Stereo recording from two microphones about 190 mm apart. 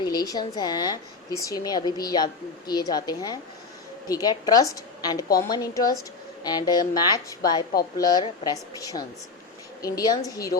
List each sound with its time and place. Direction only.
0.0 s speech: 20° left (ahead or behind)